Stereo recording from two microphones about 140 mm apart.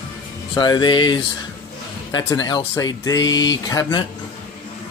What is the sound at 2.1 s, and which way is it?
Speech, 30° left (ahead or behind).